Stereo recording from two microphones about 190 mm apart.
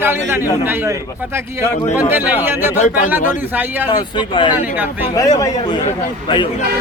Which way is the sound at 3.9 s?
25° left (ahead or behind).